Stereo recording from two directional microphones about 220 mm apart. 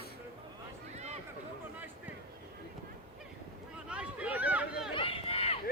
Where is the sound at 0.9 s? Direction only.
30° right (ahead or behind).